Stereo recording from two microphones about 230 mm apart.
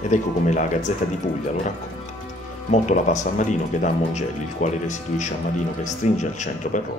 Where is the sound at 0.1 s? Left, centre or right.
Left.